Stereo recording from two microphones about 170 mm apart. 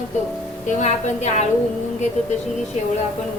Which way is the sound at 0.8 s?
45° left (ahead or behind).